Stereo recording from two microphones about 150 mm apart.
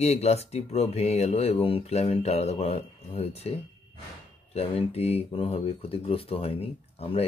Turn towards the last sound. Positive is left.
turn(degrees=40)  # may be behind; listen again after turning